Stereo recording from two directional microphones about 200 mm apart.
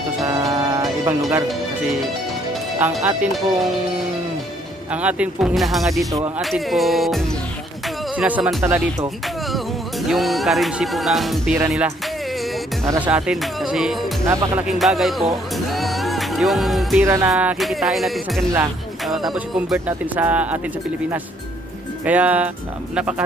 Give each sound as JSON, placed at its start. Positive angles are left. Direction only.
{"t": 0.2, "sound": "music", "side_deg": -15}
{"t": 2.8, "sound": "speech", "side_deg": 0}
{"t": 4.9, "sound": "speech", "side_deg": -5}
{"t": 8.6, "sound": "speech", "side_deg": -10}
{"t": 10.0, "sound": "speech", "side_deg": 0}
{"t": 14.3, "sound": "speech", "side_deg": -15}
{"t": 14.7, "sound": "speech", "side_deg": 0}
{"t": 17.0, "sound": "speech", "side_deg": -15}
{"t": 22.0, "sound": "speech", "side_deg": -5}